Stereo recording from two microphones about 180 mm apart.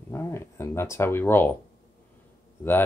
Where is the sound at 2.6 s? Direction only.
10° left (ahead or behind).